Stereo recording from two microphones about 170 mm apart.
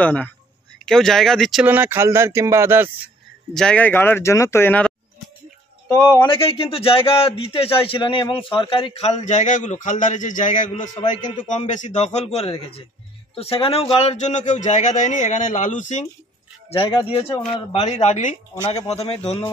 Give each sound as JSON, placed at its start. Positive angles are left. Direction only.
{"t": 0.0, "sound": "speech", "side_deg": 10}
{"t": 1.7, "sound": "speech", "side_deg": -10}
{"t": 3.5, "sound": "speech", "side_deg": 5}
{"t": 5.9, "sound": "speech", "side_deg": 15}
{"t": 6.3, "sound": "a man's voice", "side_deg": 35}
{"t": 16.7, "sound": "a man's voice", "side_deg": 30}